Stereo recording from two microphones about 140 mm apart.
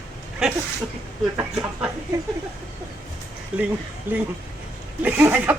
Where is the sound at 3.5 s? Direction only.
10° right (ahead or behind).